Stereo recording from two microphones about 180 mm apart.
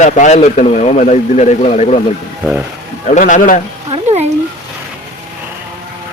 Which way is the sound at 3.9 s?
35° right (ahead or behind).